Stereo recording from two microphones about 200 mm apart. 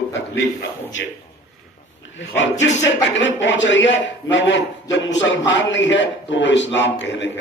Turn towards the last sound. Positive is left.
turn(degrees=65)  # may be behind; listen again after turning